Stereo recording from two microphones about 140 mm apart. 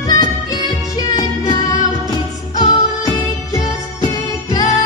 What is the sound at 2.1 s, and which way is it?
Music, 30° left (ahead or behind).